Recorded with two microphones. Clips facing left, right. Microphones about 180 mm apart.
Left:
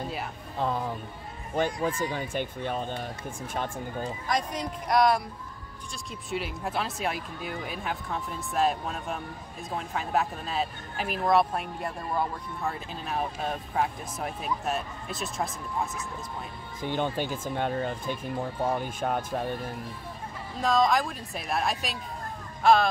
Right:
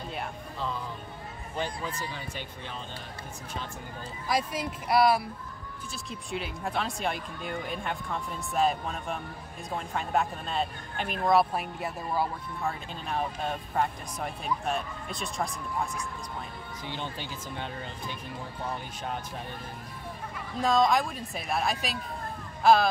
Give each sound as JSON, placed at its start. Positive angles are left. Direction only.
{"t": 0.6, "sound": "speech", "side_deg": 50}
{"t": 4.3, "sound": "speech", "side_deg": -5}
{"t": 6.3, "sound": "speech", "side_deg": 0}
{"t": 16.8, "sound": "speech", "side_deg": 50}
{"t": 20.6, "sound": "speech", "side_deg": 0}